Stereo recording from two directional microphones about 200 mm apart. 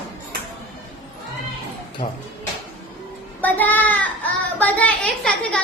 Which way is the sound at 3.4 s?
10° left (ahead or behind).